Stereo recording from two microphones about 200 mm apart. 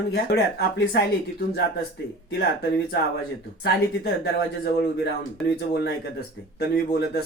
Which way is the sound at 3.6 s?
55° left (ahead or behind).